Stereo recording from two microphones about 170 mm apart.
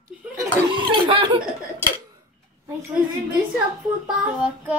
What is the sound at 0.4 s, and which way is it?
Laughter, 30° right (ahead or behind).